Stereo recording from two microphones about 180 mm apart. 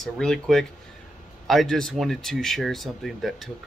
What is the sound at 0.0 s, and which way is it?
Speech, centre (ahead or behind).